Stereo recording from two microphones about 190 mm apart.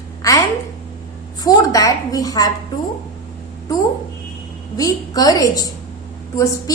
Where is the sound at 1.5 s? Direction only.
20° left (ahead or behind).